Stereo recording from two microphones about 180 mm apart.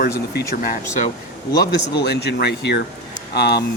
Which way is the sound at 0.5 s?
50° left (ahead or behind).